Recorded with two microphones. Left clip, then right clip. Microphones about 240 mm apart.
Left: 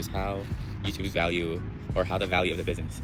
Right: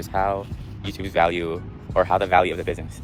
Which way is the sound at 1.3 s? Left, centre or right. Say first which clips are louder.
Right 4 dB; right.